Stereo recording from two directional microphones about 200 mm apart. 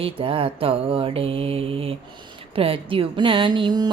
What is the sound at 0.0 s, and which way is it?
Mantra, 25° right (ahead or behind).